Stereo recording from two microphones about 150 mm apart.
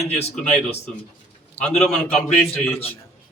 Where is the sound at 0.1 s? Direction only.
45° left (ahead or behind).